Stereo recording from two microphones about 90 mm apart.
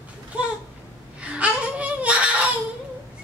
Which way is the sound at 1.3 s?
15° right (ahead or behind).